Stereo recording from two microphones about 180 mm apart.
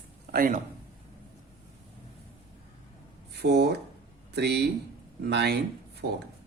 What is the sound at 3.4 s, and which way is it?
Speech, 65° right (ahead or behind).